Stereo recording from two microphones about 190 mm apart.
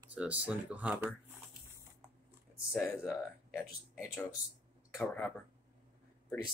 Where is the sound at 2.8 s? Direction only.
5° left (ahead or behind).